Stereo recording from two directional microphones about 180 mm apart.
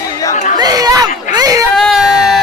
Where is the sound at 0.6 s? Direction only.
20° right (ahead or behind).